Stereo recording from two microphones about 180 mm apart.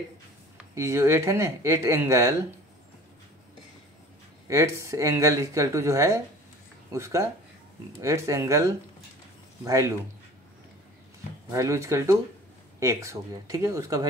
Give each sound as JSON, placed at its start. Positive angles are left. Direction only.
{"t": 0.6, "sound": "speech", "side_deg": -15}
{"t": 4.5, "sound": "speech", "side_deg": -15}
{"t": 11.5, "sound": "speech", "side_deg": -15}